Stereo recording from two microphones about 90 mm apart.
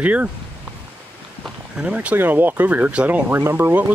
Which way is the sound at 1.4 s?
10° right (ahead or behind).